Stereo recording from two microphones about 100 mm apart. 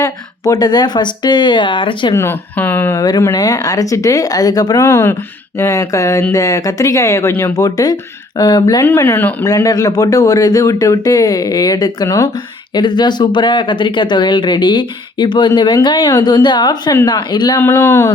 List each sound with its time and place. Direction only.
0.0 s speech: 40° left (ahead or behind); by 2.1 s 55° left (ahead or behind)
2.1 s speech: 25° left (ahead or behind)
3.3 s speech: 40° left (ahead or behind)
4.9 s speech: 25° left (ahead or behind); by 8.8 s 45° left (ahead or behind)
8.8 s speech: 25° left (ahead or behind)
9.4 s speech: 35° left (ahead or behind)
12.7 s speech: 50° left (ahead or behind)
17.8 s speech: 25° left (ahead or behind)